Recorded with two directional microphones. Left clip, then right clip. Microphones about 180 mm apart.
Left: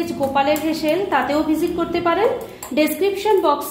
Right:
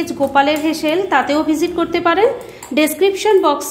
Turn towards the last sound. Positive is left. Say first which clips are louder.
# right 3 dB
turn(degrees=-45)  # may be behind; listen again after turning